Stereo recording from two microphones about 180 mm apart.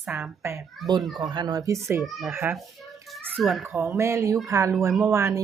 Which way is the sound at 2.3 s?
15° right (ahead or behind).